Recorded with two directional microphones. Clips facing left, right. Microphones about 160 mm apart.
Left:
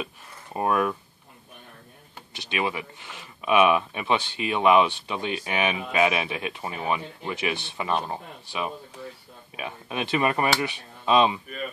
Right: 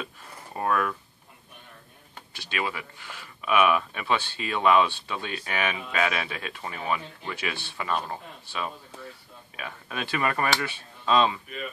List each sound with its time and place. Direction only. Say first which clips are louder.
0.6 s speech: left 3 dB; 20° left (ahead or behind)
2.3 s speech: left 3 dB; 20° left (ahead or behind)